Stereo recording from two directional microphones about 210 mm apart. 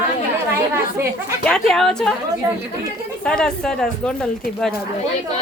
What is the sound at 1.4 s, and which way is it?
Speech, 5° left (ahead or behind).